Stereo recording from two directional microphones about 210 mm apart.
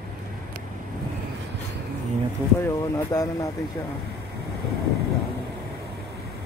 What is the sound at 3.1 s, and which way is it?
Speech, 15° left (ahead or behind).